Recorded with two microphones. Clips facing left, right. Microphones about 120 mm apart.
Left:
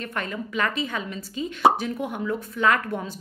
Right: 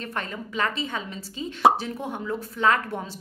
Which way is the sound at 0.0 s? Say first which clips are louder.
Left 2 dB; 30° right (ahead or behind).